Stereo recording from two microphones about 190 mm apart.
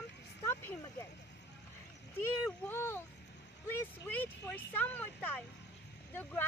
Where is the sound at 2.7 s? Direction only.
10° left (ahead or behind).